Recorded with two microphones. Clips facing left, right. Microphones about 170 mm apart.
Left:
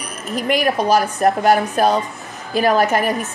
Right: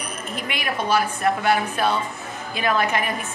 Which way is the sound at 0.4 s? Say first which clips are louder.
Left 10 dB; 40° left (ahead or behind).